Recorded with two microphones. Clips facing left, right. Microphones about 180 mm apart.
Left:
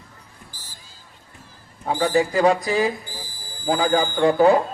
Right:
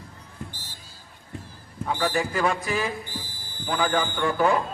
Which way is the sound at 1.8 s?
35° left (ahead or behind).